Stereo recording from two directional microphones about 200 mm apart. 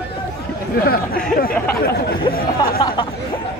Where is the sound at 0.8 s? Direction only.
50° left (ahead or behind).